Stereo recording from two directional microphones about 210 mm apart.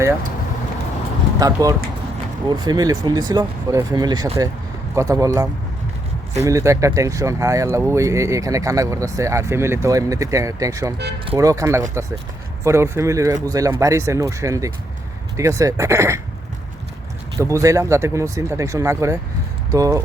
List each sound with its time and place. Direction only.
1.4 s speech: 15° right (ahead or behind)
17.3 s speech: 15° right (ahead or behind)